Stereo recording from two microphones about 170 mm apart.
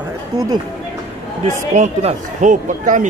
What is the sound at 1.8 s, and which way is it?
Speech, 40° right (ahead or behind).